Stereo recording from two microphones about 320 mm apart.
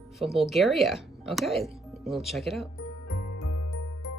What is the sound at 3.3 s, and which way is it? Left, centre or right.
Music, left.